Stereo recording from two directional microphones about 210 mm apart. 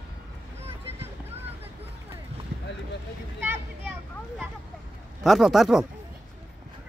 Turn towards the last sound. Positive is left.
turn(degrees=0)  # may be behind; listen again after turning